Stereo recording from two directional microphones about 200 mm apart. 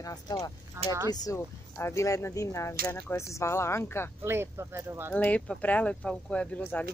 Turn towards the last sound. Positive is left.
turn(degrees=10)  # may be behind; listen again after turning